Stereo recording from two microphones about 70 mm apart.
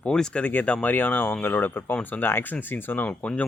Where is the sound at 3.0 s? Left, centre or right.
Centre.